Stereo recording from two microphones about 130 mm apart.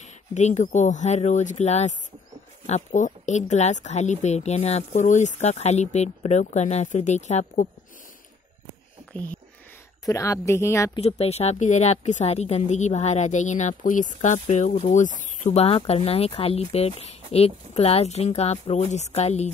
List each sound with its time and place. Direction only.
0.0 s speech: 65° left (ahead or behind)
9.1 s a sound: 10° left (ahead or behind)
10.0 s a woman's voice: 25° left (ahead or behind)
11.0 s speech: 55° left (ahead or behind)